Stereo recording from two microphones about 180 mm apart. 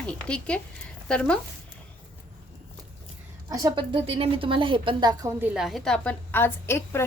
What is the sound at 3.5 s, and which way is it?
A woman's voice, 25° right (ahead or behind).